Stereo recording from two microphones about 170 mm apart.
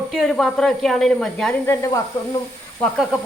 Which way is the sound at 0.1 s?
Centre (ahead or behind).